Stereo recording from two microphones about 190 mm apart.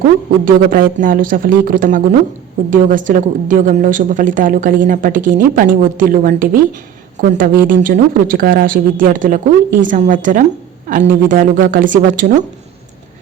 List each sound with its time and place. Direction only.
0.4 s a woman's voice: 50° right (ahead or behind)